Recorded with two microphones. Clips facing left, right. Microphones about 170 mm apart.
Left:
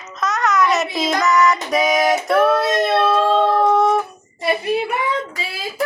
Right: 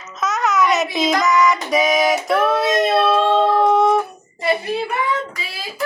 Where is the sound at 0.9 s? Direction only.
Centre (ahead or behind).